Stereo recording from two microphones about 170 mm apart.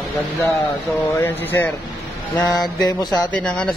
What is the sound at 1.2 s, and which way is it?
Speech, 10° left (ahead or behind).